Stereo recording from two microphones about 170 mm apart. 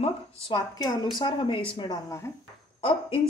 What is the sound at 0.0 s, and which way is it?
A woman's voice, 25° left (ahead or behind).